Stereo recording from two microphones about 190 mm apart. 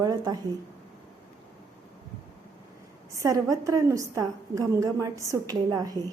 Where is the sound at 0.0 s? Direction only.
20° right (ahead or behind).